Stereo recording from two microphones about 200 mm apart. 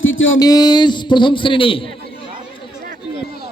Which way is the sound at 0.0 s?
75° left (ahead or behind).